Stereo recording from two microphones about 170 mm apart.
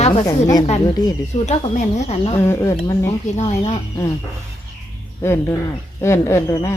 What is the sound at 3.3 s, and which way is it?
Speech, 40° left (ahead or behind).